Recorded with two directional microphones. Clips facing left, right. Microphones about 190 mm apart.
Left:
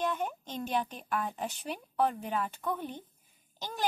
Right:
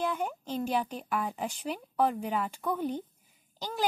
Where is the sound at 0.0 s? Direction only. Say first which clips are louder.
Right 1 dB; 10° right (ahead or behind).